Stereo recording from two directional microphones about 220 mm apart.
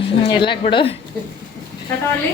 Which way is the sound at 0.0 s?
20° left (ahead or behind).